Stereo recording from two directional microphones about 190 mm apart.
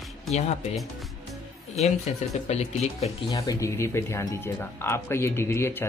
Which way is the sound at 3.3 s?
20° left (ahead or behind).